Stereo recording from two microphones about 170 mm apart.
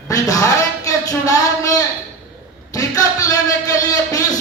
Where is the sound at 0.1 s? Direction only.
20° left (ahead or behind).